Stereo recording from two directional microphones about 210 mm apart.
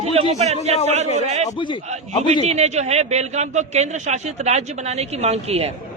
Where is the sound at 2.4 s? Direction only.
30° right (ahead or behind).